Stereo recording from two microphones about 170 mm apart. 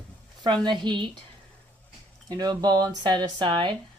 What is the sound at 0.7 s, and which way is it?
Speech, 25° right (ahead or behind).